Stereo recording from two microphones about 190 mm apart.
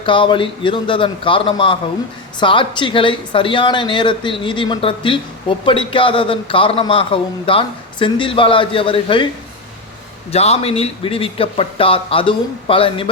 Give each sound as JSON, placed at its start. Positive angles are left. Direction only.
{"t": 0.0, "sound": "speech", "side_deg": 25}
{"t": 10.3, "sound": "speech", "side_deg": 35}